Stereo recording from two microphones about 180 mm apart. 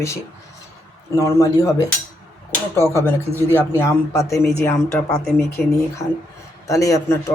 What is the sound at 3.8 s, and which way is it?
Speech, 15° left (ahead or behind).